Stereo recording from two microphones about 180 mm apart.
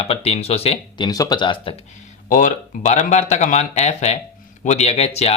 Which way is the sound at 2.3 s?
45° left (ahead or behind).